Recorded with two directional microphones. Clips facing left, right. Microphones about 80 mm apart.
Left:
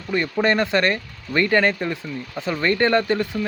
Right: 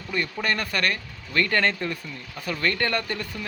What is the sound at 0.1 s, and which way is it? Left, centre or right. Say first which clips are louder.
Speech: left 7 dB; left.